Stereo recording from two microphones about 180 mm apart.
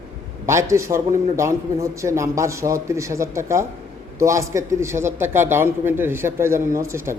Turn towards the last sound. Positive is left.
turn(degrees=-15)  # may be behind; listen again after turning